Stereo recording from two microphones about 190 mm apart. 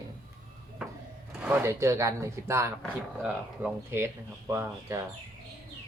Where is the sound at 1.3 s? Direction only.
10° right (ahead or behind).